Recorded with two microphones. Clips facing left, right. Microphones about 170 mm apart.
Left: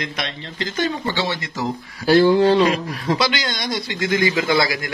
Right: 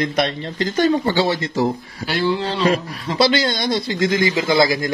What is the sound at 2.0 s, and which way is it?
Speech, 45° left (ahead or behind).